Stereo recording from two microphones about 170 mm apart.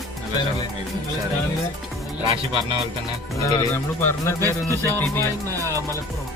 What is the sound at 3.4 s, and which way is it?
Speech, 15° left (ahead or behind).